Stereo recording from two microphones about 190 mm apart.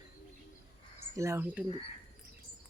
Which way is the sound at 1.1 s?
15° right (ahead or behind).